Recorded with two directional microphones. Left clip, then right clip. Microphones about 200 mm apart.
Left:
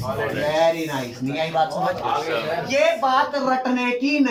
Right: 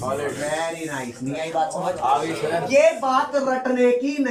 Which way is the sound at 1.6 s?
5° right (ahead or behind).